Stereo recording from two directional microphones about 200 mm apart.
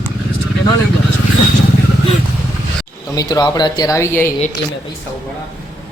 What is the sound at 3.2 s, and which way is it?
Speech, 20° left (ahead or behind).